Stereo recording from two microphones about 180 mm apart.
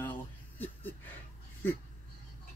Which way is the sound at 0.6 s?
10° left (ahead or behind).